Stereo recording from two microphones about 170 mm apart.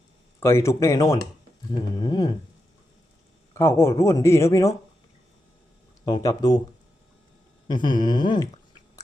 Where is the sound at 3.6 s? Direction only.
15° left (ahead or behind).